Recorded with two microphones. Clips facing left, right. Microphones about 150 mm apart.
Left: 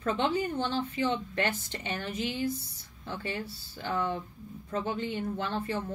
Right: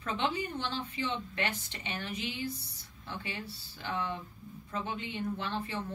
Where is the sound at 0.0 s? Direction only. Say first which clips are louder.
Left 5 dB; 40° left (ahead or behind).